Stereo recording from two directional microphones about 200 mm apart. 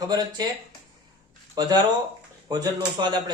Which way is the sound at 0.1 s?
20° right (ahead or behind).